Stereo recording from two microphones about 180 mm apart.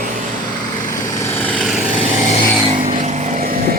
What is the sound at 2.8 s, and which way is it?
Vehicle, 50° right (ahead or behind).